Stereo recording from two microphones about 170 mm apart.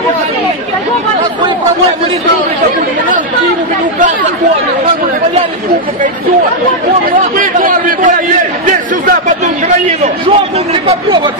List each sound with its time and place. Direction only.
7.3 s speech: 55° right (ahead or behind)
9.8 s a man's voice: 35° right (ahead or behind)